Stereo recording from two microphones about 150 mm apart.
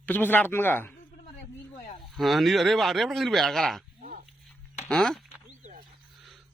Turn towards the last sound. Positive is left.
turn(degrees=5)  # may be behind; listen again after turning